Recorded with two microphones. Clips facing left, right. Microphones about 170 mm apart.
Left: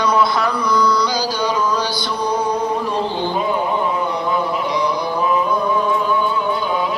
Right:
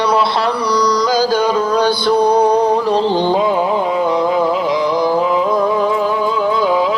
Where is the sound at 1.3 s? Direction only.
55° right (ahead or behind).